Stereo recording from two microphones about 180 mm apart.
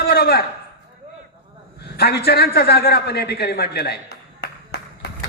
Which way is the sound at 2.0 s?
60° left (ahead or behind).